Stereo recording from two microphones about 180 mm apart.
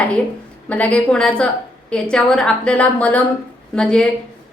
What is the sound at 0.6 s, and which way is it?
A woman's voice, 5° left (ahead or behind).